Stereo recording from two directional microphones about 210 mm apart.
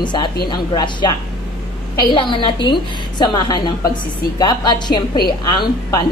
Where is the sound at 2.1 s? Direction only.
25° left (ahead or behind).